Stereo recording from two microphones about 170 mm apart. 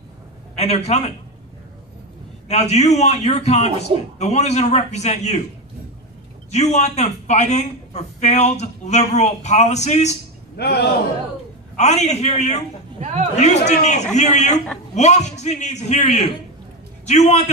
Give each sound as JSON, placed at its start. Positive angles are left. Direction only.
{"t": 0.6, "sound": "a man's voice", "side_deg": 40}
{"t": 2.4, "sound": "a man's voice", "side_deg": 40}
{"t": 6.5, "sound": "a man's voice", "side_deg": 40}
{"t": 10.6, "sound": "a man's voice", "side_deg": 70}
{"t": 11.7, "sound": "a man's voice", "side_deg": 40}
{"t": 13.0, "sound": "speech", "side_deg": -40}
{"t": 13.4, "sound": "a man's voice", "side_deg": 40}